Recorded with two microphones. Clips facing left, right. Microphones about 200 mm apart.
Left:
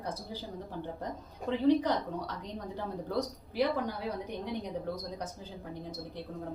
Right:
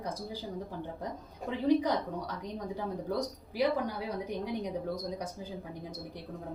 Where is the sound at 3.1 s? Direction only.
10° right (ahead or behind).